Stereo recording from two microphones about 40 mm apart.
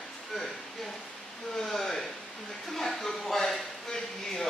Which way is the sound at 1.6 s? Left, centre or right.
Centre.